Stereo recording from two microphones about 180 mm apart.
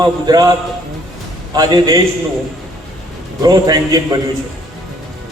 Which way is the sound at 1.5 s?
20° right (ahead or behind).